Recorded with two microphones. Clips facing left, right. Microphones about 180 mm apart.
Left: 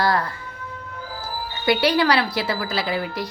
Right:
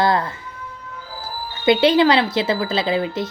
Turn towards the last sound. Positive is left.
turn(degrees=-25)  # may be behind; listen again after turning